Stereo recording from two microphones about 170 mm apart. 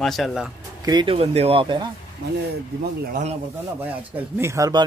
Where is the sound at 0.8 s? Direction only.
25° right (ahead or behind).